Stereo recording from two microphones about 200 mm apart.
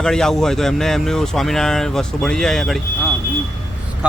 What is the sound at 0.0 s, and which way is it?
Speech, centre (ahead or behind).